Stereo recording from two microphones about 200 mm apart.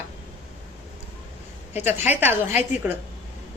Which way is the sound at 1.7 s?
10° right (ahead or behind).